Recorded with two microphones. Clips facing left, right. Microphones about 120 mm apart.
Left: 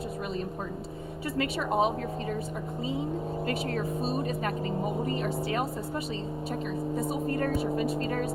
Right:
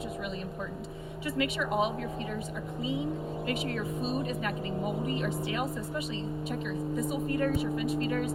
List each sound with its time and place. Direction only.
1.4 s speech: 35° left (ahead or behind)
3.4 s speech: 40° left (ahead or behind)